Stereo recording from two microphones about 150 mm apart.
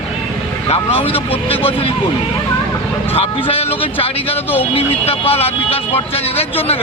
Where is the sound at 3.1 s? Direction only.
40° left (ahead or behind).